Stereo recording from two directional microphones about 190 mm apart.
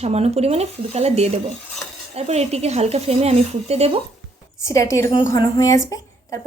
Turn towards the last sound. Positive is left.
turn(degrees=15)  # may be behind; listen again after turning